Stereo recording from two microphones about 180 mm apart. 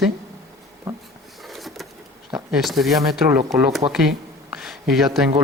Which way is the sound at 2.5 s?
Centre (ahead or behind).